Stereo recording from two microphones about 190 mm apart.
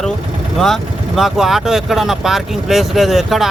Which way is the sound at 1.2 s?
Centre (ahead or behind).